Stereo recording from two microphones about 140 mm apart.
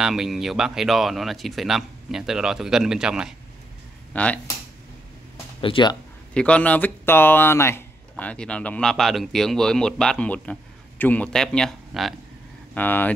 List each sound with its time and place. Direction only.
0.0 s speech: 5° right (ahead or behind)
4.1 s speech: 10° left (ahead or behind)
5.6 s speech: 35° left (ahead or behind)
6.3 s speech: 10° left (ahead or behind)
12.7 s speech: 15° left (ahead or behind)